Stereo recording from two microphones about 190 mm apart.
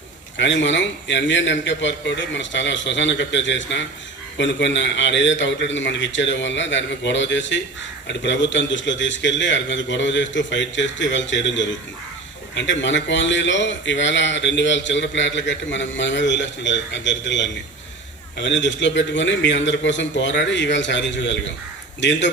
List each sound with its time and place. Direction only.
0.3 s a man's voice: 70° left (ahead or behind)